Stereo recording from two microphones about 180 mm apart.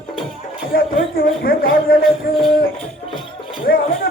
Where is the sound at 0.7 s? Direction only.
55° left (ahead or behind).